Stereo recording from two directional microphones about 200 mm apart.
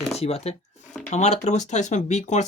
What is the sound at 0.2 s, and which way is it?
Speech, 30° left (ahead or behind).